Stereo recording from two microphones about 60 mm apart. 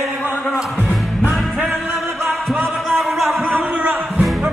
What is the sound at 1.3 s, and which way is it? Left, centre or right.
Music, centre.